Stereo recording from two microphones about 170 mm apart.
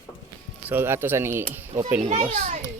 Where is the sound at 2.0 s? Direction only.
40° right (ahead or behind).